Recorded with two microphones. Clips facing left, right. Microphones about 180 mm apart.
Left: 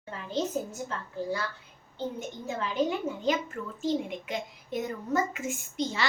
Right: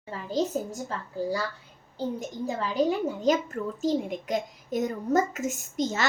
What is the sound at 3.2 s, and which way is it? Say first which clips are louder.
A child's voice: right 6 dB; 40° right (ahead or behind).